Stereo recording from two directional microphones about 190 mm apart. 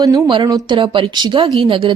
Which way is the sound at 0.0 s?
25° right (ahead or behind).